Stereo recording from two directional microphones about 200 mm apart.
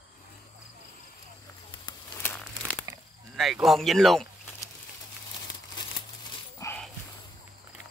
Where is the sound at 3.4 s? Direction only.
Centre (ahead or behind).